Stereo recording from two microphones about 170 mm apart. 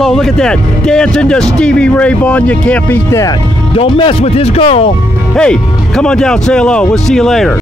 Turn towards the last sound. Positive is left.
turn(degrees=0)  # may be behind; listen again after turning